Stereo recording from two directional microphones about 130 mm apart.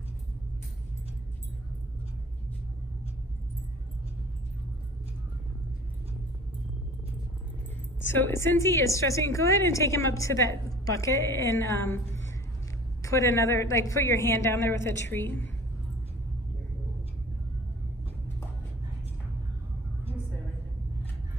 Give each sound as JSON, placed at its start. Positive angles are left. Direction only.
{"t": 8.2, "sound": "a woman's voice", "side_deg": 20}